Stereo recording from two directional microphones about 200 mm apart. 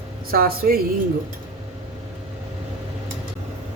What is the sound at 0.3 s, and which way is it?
Speech, 50° right (ahead or behind).